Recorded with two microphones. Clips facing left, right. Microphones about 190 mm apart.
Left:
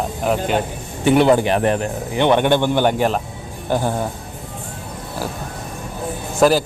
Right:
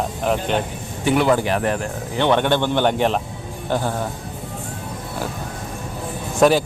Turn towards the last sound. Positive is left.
turn(degrees=0)  # may be behind; listen again after turning